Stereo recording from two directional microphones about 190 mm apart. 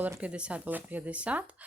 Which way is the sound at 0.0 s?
10° right (ahead or behind).